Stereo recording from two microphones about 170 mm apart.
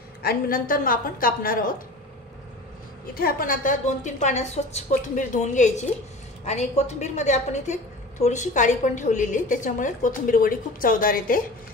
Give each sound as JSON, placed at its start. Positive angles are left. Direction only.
{"t": 0.2, "sound": "a woman's voice", "side_deg": 60}
{"t": 3.2, "sound": "a woman's voice", "side_deg": 60}